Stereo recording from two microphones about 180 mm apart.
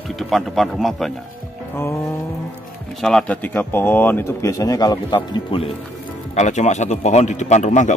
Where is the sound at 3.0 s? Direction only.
5° left (ahead or behind); by 5.6 s 25° left (ahead or behind).